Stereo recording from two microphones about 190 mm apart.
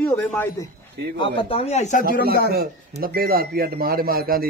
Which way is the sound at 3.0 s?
50° right (ahead or behind).